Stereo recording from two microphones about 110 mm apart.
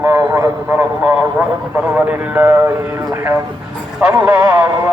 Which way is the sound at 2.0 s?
15° right (ahead or behind).